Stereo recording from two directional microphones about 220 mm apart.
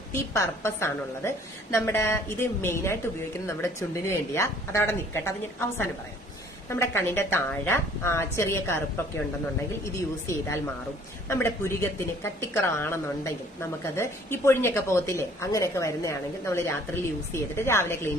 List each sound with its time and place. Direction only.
0.1 s speech: 10° left (ahead or behind)
9.8 s speech: 15° left (ahead or behind)